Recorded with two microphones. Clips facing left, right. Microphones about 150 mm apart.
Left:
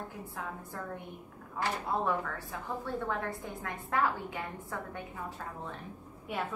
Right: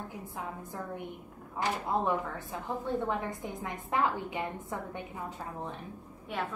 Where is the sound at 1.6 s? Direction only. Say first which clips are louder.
Right 2 dB; 20° right (ahead or behind).